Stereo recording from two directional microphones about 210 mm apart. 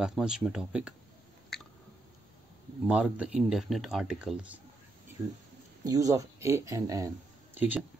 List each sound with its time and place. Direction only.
0.0 s speech: centre (ahead or behind)
2.9 s speech: 5° right (ahead or behind)
5.2 s speech: 15° right (ahead or behind)